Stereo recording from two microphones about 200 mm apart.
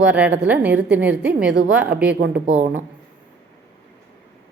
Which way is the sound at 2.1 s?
55° right (ahead or behind).